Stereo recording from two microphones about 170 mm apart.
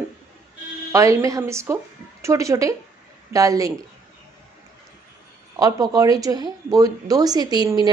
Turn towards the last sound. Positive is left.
turn(degrees=-25)  # may be behind; listen again after turning